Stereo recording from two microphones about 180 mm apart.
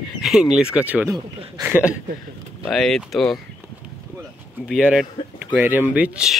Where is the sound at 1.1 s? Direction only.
25° right (ahead or behind).